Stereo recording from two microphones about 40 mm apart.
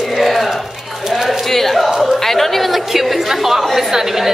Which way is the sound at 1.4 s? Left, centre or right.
Centre.